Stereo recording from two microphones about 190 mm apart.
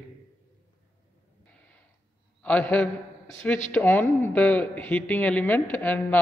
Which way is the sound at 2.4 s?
5° left (ahead or behind).